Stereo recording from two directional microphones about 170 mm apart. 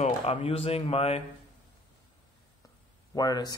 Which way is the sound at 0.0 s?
40° left (ahead or behind).